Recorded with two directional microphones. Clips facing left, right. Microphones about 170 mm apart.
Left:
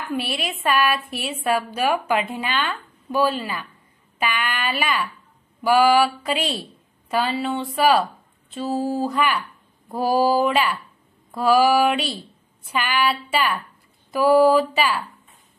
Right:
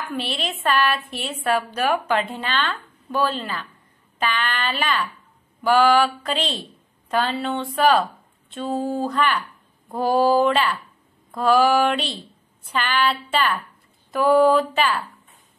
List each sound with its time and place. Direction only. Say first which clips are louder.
0.1 s a woman's voice: left 3 dB; 10° left (ahead or behind)